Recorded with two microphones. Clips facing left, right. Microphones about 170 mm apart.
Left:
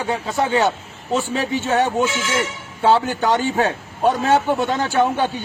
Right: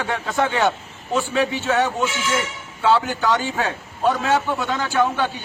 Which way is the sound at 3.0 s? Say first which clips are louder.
Left 2 dB; 55° left (ahead or behind).